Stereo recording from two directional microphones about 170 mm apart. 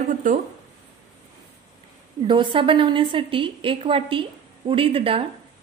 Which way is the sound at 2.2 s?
25° right (ahead or behind).